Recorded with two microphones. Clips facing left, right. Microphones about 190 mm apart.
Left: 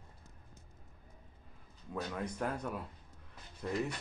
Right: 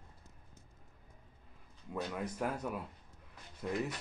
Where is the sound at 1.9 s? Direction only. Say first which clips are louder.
Even; 5° right (ahead or behind).